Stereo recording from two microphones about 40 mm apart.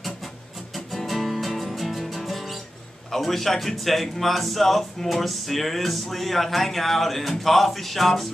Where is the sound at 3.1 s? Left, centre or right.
Centre.